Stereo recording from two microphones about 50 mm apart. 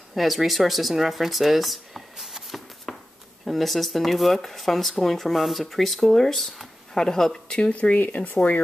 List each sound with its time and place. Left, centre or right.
0.1 s speech: centre
2.9 s a sound: centre
3.4 s speech: centre
7.5 s speech: centre
7.9 s speech: left